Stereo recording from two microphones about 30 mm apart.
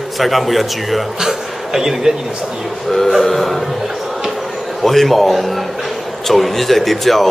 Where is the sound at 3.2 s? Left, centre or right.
Centre.